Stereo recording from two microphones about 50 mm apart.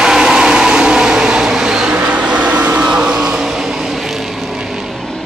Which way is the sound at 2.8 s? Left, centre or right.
Centre.